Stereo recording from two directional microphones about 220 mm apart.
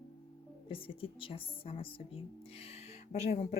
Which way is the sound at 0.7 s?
25° left (ahead or behind).